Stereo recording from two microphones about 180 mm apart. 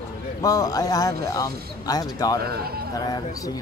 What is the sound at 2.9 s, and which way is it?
Speech, 25° left (ahead or behind).